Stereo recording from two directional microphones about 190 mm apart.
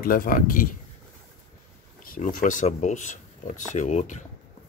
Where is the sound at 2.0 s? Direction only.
45° left (ahead or behind).